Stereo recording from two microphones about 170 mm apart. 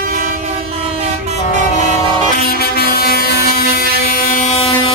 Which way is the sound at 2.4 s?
65° left (ahead or behind).